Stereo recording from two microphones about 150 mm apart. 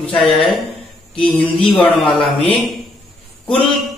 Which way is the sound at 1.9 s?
35° left (ahead or behind).